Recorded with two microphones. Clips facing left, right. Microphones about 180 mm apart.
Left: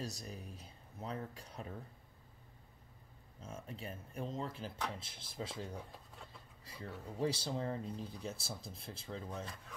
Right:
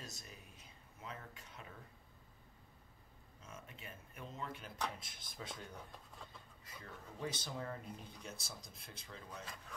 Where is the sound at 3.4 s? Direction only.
30° left (ahead or behind).